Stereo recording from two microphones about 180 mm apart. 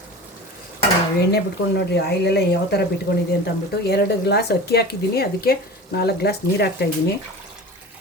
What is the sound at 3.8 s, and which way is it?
Speech, 65° left (ahead or behind).